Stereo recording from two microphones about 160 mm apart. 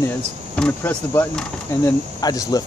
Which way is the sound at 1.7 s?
20° left (ahead or behind).